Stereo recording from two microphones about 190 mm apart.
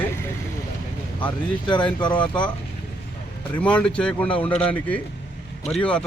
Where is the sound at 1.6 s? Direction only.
25° left (ahead or behind).